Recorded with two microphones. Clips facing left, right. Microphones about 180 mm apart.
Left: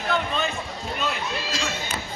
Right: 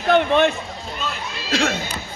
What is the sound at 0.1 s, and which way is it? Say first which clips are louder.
Speech: right 11 dB; 70° right (ahead or behind).